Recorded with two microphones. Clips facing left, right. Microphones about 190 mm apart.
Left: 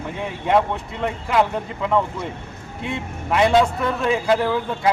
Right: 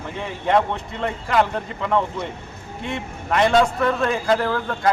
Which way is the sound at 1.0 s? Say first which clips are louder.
Left 1 dB; 5° left (ahead or behind).